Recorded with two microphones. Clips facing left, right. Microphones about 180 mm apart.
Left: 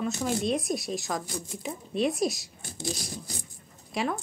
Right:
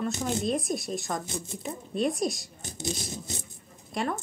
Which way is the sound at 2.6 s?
20° right (ahead or behind).